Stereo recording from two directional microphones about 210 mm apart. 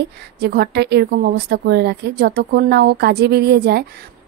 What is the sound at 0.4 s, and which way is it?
A woman's voice, 50° right (ahead or behind).